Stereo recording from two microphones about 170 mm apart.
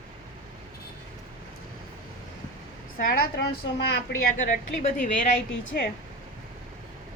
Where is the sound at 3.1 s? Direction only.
65° left (ahead or behind).